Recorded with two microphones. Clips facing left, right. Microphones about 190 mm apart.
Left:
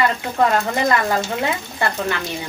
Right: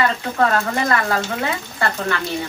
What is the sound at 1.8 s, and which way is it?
Speech, 15° left (ahead or behind).